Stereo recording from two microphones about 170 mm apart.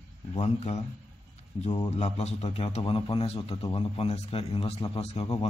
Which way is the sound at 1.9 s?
40° left (ahead or behind).